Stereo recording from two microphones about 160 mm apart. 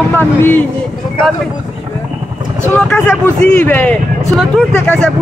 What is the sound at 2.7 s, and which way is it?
Speech, 10° left (ahead or behind).